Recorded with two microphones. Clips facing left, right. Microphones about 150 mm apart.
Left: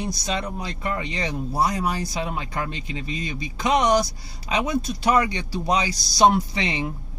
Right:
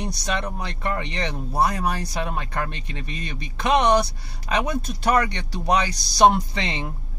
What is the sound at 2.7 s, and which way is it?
Speech, 60° right (ahead or behind).